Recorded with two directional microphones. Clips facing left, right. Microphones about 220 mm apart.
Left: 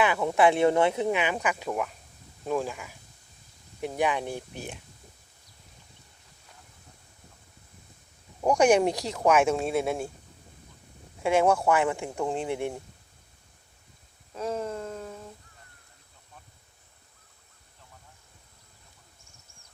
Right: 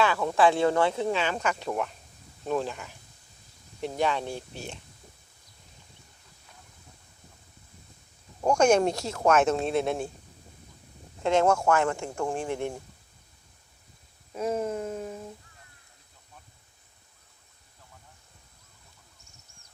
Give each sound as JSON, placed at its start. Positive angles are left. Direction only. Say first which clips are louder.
{"t": 0.0, "sound": "speech", "louder": "even", "side_deg": 20}
{"t": 8.4, "sound": "speech", "louder": "even", "side_deg": 15}
{"t": 11.2, "sound": "speech", "louder": "even", "side_deg": 10}
{"t": 14.3, "sound": "a sound", "louder": "right 3 dB", "side_deg": -10}